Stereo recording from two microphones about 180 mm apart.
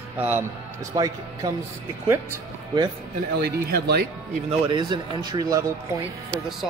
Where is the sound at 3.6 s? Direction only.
60° right (ahead or behind).